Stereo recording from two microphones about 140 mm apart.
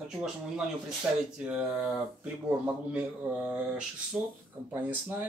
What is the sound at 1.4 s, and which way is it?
Speech, 10° right (ahead or behind).